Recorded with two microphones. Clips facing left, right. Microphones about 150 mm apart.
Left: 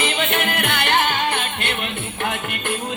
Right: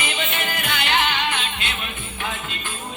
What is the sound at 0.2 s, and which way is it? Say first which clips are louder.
Music: left 5 dB; 60° left (ahead or behind).